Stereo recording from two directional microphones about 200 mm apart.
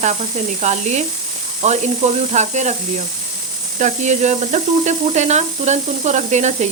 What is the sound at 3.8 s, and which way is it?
Speech, 35° right (ahead or behind).